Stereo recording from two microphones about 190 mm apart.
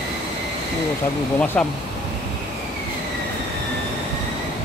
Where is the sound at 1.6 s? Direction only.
5° left (ahead or behind).